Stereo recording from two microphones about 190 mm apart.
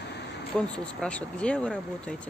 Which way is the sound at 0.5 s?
5° left (ahead or behind).